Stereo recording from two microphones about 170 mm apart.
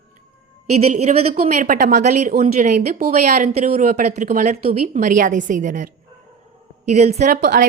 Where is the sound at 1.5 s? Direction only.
50° right (ahead or behind).